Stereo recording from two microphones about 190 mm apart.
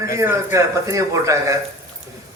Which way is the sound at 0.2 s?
15° right (ahead or behind).